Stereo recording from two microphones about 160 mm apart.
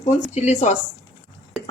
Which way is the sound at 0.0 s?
45° left (ahead or behind).